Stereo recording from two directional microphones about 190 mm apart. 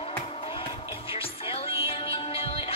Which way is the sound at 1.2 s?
30° left (ahead or behind).